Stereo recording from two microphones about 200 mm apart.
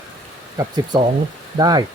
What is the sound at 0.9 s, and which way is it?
Speech, 15° right (ahead or behind).